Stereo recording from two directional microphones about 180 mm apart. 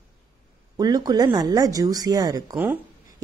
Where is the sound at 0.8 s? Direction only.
20° right (ahead or behind).